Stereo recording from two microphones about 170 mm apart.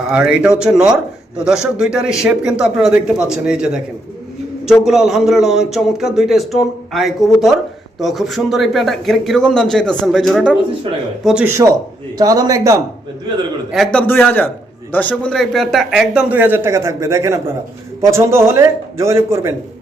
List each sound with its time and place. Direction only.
0.1 s a man's voice: 5° right (ahead or behind)
11.4 s a man's voice: 15° right (ahead or behind)
13.7 s a man's voice: centre (ahead or behind); by 19.5 s 15° right (ahead or behind)